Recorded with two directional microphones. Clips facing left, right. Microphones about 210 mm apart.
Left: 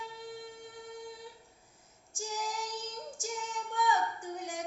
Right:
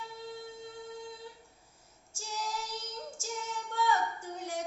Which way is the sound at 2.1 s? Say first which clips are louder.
Left 1 dB; 15° left (ahead or behind).